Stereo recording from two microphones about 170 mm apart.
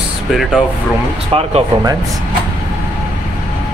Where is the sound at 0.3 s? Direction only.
Centre (ahead or behind).